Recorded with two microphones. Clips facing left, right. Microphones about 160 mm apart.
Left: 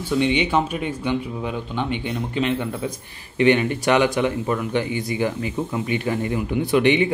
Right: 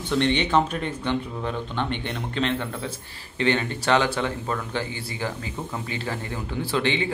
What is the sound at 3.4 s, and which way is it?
A man's voice, 15° left (ahead or behind).